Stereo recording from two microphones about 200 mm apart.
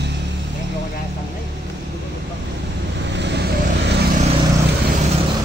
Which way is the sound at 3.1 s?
60° right (ahead or behind).